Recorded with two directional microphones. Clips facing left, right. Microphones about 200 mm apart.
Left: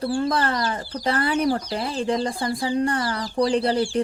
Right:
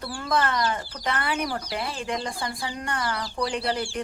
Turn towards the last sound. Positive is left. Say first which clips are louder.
# left 7 dB
turn(degrees=35)  # may be behind; listen again after turning